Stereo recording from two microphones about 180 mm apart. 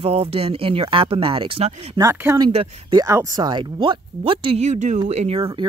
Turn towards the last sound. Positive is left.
turn(degrees=-35)  # may be behind; listen again after turning